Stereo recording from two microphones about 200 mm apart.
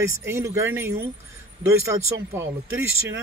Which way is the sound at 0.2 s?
15° right (ahead or behind).